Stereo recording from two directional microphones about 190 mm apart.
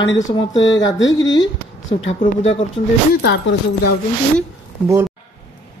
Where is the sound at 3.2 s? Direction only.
65° left (ahead or behind).